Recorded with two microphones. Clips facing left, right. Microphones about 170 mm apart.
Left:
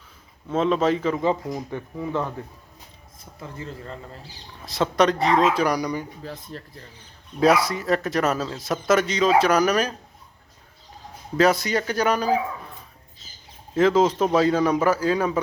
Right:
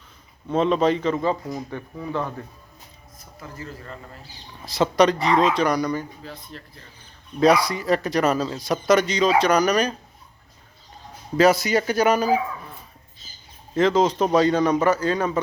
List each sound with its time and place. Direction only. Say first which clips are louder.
0.4 s a man's voice: right 1 dB; centre (ahead or behind)
1.7 s speech: left 2 dB; 15° left (ahead or behind)
3.5 s a man's voice: left 1 dB; 25° left (ahead or behind)
4.6 s a man's voice: right 2 dB; centre (ahead or behind)
6.2 s speech: left 3 dB; 40° left (ahead or behind)
7.3 s a man's voice: right 1 dB; 5° left (ahead or behind)
11.3 s speech: right 2 dB; centre (ahead or behind)
13.7 s a man's voice: left 1 dB; 5° left (ahead or behind)